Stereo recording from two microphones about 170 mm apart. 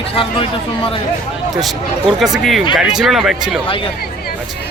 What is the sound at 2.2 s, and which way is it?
Speech, centre (ahead or behind).